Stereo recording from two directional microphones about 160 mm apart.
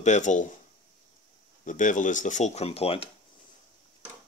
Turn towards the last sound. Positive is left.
turn(degrees=35)  # may be behind; listen again after turning